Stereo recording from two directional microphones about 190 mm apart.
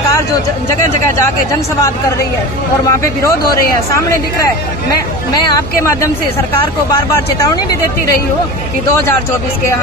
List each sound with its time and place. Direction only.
2.9 s a man's voice: 15° left (ahead or behind)
6.9 s speech: 20° left (ahead or behind)